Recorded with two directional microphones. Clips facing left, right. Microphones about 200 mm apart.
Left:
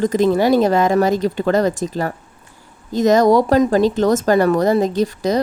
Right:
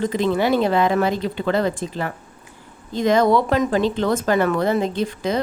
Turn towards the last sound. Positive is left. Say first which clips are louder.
# left 5 dB
turn(degrees=40)  # may be behind; listen again after turning